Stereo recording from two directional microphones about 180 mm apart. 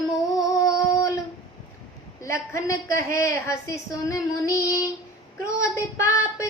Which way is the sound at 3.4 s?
20° left (ahead or behind).